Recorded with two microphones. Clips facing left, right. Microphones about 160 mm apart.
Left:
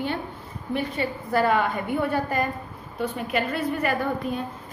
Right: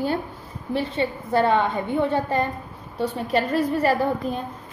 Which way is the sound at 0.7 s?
30° right (ahead or behind).